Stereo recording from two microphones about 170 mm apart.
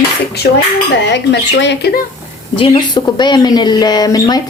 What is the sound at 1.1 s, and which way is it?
Speech, 90° left.